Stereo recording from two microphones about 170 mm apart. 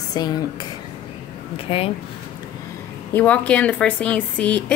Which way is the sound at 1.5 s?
35° left (ahead or behind).